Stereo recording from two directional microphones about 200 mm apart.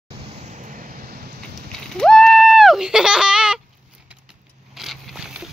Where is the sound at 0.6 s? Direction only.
40° right (ahead or behind).